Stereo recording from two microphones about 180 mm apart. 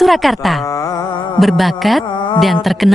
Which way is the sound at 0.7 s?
20° left (ahead or behind).